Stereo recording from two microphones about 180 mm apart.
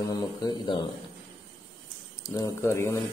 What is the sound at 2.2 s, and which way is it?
Speech, 20° left (ahead or behind).